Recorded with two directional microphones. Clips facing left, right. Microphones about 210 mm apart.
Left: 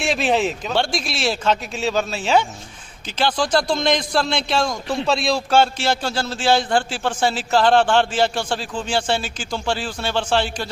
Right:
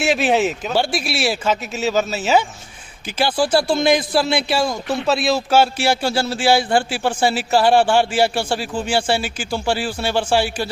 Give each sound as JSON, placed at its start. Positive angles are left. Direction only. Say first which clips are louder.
{"t": 0.0, "sound": "speech", "louder": "right 2 dB", "side_deg": -5}